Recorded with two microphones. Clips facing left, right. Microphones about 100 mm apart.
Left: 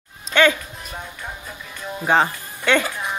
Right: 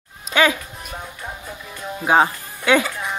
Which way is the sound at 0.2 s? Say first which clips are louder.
Left 1 dB; 5° right (ahead or behind).